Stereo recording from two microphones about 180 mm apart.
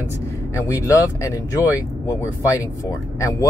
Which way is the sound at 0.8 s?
15° left (ahead or behind).